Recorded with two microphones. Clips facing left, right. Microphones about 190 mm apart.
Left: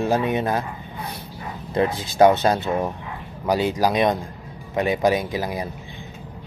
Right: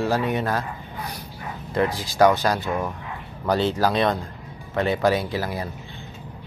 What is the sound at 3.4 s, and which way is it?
A man's voice, 10° left (ahead or behind).